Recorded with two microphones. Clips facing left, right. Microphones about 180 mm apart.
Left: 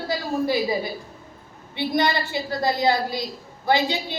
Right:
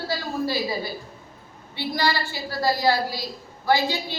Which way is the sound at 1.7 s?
20° left (ahead or behind).